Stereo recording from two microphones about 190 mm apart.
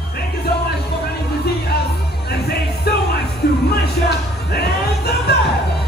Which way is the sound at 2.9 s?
55° left (ahead or behind).